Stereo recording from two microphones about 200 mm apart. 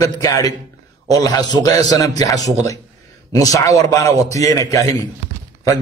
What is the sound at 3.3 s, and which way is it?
A man's voice, 15° left (ahead or behind).